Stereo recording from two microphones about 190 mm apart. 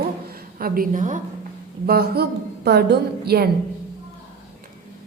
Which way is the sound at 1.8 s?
55° right (ahead or behind).